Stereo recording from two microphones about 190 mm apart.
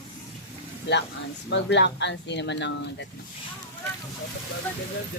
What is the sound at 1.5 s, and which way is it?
Speech, 70° left (ahead or behind).